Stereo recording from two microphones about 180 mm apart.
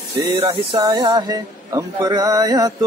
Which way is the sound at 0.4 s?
25° right (ahead or behind).